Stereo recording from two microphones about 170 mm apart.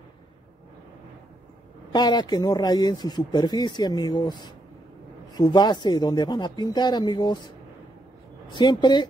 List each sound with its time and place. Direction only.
1.9 s speech: 25° left (ahead or behind)
8.5 s speech: 25° left (ahead or behind)